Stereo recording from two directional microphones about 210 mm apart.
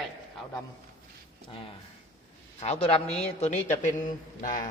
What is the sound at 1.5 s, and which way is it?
Speech, 25° left (ahead or behind).